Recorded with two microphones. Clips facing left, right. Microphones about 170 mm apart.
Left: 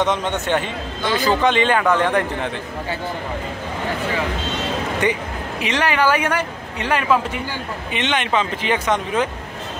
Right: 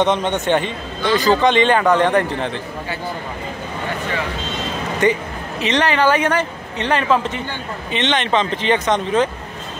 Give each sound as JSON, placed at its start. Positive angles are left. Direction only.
{"t": 0.0, "sound": "a man's voice", "side_deg": -20}
{"t": 1.1, "sound": "a man's voice", "side_deg": 10}
{"t": 1.9, "sound": "a man's voice", "side_deg": -10}
{"t": 5.0, "sound": "a man's voice", "side_deg": 15}